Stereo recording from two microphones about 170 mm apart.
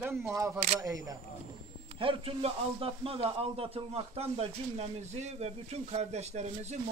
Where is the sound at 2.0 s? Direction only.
30° right (ahead or behind).